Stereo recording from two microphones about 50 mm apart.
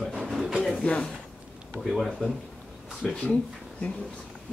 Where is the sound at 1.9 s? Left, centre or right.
Centre.